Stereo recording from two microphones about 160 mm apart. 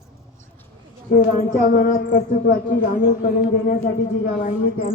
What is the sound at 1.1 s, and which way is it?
Speech, 65° left (ahead or behind).